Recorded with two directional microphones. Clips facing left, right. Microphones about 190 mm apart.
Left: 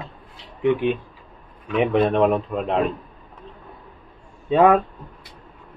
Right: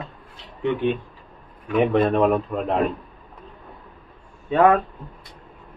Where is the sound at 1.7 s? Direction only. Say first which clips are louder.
Even; centre (ahead or behind).